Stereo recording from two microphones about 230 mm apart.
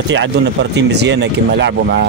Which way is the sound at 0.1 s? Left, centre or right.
Right.